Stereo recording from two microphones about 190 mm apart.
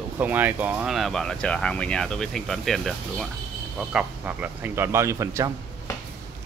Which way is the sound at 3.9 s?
10° right (ahead or behind).